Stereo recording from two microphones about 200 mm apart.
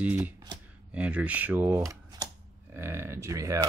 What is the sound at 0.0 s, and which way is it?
Speech, 10° right (ahead or behind).